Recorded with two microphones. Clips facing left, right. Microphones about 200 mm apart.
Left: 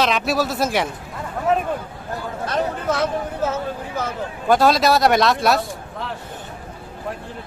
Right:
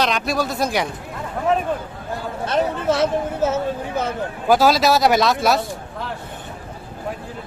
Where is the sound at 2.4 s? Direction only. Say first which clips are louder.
Right 3 dB; 25° right (ahead or behind).